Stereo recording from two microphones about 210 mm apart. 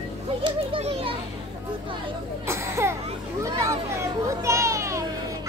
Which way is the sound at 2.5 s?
15° right (ahead or behind).